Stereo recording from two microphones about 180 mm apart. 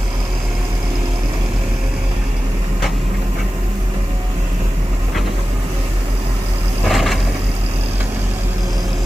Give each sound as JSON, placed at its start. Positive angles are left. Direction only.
{"t": 6.9, "sound": "vehicle", "side_deg": 0}